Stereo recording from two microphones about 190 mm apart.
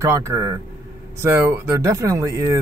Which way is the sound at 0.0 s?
15° right (ahead or behind).